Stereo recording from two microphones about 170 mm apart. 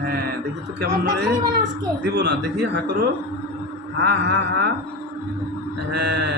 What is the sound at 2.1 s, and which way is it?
Speech, 80° right.